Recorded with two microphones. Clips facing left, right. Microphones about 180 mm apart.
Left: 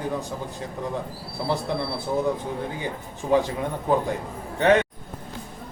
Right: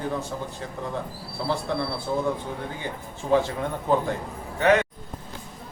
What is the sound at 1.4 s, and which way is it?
Speech, 15° left (ahead or behind).